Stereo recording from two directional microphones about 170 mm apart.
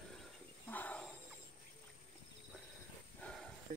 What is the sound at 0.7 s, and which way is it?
Wild animals, 10° left (ahead or behind).